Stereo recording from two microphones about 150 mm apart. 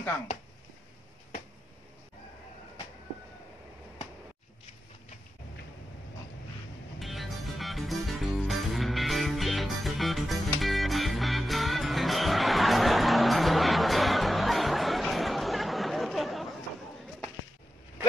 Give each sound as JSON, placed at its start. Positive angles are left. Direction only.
{"t": 7.0, "sound": "music", "side_deg": 0}